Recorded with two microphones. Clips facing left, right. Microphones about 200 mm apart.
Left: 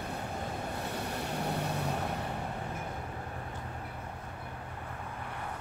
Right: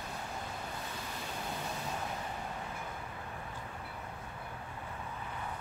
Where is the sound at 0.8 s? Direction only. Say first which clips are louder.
Left 7 dB; 65° left (ahead or behind).